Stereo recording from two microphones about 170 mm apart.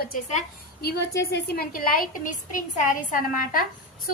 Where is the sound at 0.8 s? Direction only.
75° left (ahead or behind).